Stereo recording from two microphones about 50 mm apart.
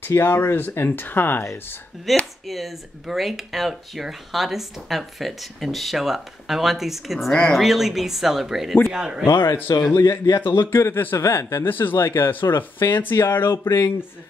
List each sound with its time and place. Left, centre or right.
0.2 s speech: left
2.1 s speech: centre
9.2 s a man's voice: left
12.0 s speech: left
12.3 s speech: left
13.2 s a man's voice: left